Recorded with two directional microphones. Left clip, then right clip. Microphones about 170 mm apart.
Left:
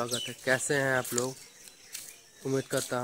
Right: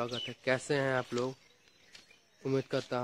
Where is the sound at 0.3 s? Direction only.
Centre (ahead or behind).